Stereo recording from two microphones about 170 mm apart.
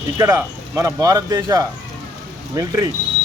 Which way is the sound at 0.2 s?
15° right (ahead or behind).